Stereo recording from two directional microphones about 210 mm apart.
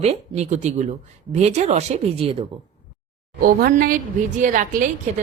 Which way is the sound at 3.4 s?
45° right (ahead or behind).